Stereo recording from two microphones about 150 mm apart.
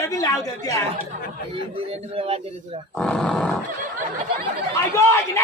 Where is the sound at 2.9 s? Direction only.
5° left (ahead or behind).